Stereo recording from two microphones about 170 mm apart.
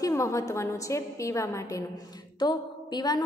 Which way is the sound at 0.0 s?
20° left (ahead or behind).